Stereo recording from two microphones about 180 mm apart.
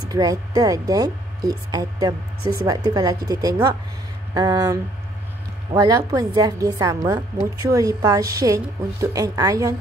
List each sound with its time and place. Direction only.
0.1 s speech: 20° right (ahead or behind)